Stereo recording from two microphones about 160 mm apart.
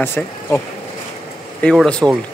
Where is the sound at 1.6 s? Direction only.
5° left (ahead or behind).